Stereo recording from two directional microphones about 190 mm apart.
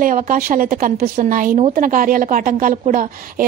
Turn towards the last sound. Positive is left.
turn(degrees=-45)  # may be behind; listen again after turning